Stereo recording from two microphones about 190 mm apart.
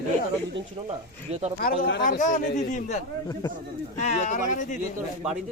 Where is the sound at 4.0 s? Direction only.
40° left (ahead or behind).